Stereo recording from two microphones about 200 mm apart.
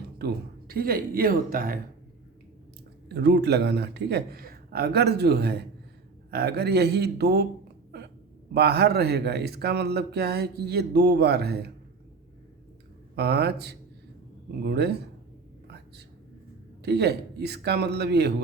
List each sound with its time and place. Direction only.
0.2 s a man's voice: 55° right (ahead or behind)
3.1 s a man's voice: 60° right (ahead or behind)
8.5 s speech: 55° right (ahead or behind)
13.1 s a man's voice: 55° right (ahead or behind)
15.6 s whispering: 55° right (ahead or behind)
16.8 s a man's voice: 55° right (ahead or behind)